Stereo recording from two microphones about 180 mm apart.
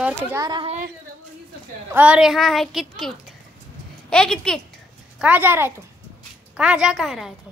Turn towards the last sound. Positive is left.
turn(degrees=0)  # may be behind; listen again after turning